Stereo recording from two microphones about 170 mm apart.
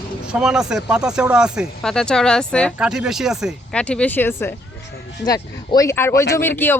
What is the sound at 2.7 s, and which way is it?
Speech, 5° right (ahead or behind).